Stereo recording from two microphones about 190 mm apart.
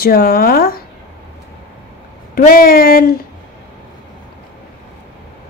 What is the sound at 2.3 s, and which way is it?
Speech, 50° left (ahead or behind).